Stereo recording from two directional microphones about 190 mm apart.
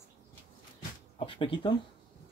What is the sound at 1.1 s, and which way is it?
Speech, 25° left (ahead or behind).